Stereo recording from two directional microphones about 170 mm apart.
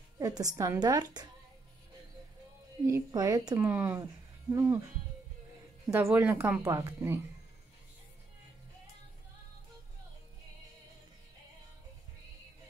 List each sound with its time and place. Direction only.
0.2 s a woman's voice: 20° right (ahead or behind)
2.9 s a woman's voice: 20° right (ahead or behind)
5.9 s speech: 10° right (ahead or behind)